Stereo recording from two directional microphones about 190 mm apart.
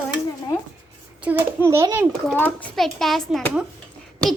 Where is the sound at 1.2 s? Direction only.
10° right (ahead or behind).